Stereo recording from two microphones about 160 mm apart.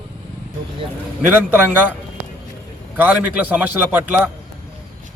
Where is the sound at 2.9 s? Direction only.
10° right (ahead or behind).